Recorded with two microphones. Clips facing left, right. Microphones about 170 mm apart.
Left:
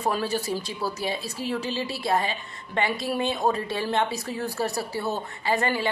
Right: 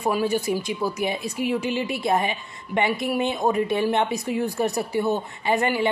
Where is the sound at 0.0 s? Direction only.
10° right (ahead or behind).